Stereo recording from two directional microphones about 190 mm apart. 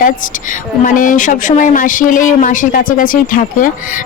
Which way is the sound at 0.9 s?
45° left (ahead or behind).